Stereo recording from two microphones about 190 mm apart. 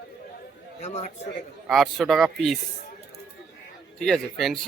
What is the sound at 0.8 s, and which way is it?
Speech, 35° left (ahead or behind).